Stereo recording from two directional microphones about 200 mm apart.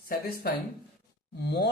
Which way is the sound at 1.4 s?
55° left (ahead or behind).